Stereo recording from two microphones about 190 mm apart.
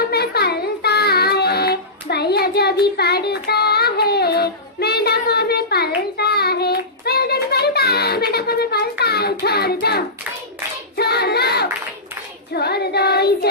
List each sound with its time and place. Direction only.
0.0 s child singing: 55° left (ahead or behind)
10.9 s child singing: 55° left (ahead or behind)